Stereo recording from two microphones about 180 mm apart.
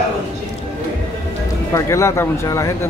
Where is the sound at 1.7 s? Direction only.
15° left (ahead or behind).